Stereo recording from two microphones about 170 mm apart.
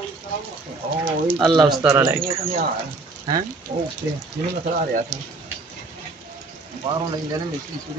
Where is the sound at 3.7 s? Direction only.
60° right (ahead or behind).